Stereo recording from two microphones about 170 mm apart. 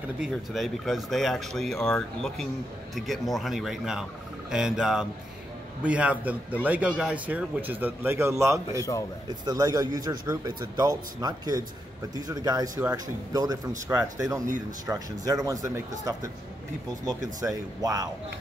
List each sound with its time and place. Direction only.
0.2 s speech: centre (ahead or behind); by 18.0 s 20° right (ahead or behind)